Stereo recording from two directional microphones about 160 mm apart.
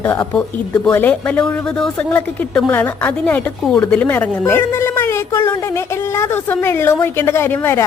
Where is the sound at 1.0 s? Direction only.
10° left (ahead or behind).